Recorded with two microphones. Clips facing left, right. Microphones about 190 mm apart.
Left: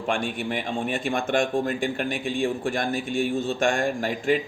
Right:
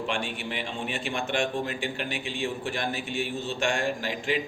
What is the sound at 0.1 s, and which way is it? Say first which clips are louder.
A man's voice: left 5 dB; 50° left (ahead or behind).